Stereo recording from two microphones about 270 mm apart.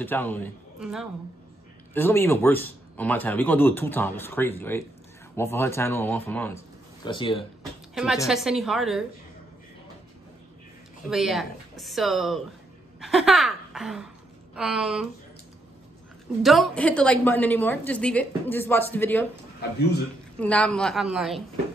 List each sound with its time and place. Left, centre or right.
0.0 s speech: centre
7.9 s a woman's voice: centre
11.1 s speech: centre
13.0 s a sound: centre
16.4 s speech: centre
20.3 s speech: centre